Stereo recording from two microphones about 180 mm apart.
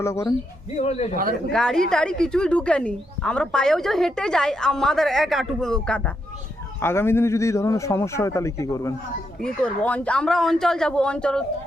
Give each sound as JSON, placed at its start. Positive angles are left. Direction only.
{"t": 0.0, "sound": "speech", "side_deg": 15}
{"t": 0.8, "sound": "speech", "side_deg": 35}
{"t": 1.1, "sound": "speech", "side_deg": -50}
{"t": 1.5, "sound": "speech", "side_deg": 5}
{"t": 9.4, "sound": "speech", "side_deg": 5}